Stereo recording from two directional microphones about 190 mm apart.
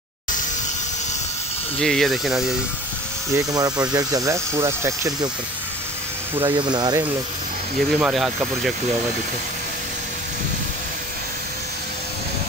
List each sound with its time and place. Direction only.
1.8 s speech: centre (ahead or behind)
3.3 s speech: 20° right (ahead or behind)
6.3 s speech: 25° right (ahead or behind)
7.9 s speech: centre (ahead or behind)